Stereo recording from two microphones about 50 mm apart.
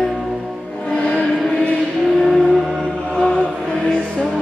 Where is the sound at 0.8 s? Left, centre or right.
Left.